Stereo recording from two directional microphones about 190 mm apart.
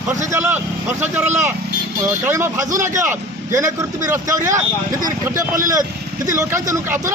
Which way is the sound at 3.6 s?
15° right (ahead or behind).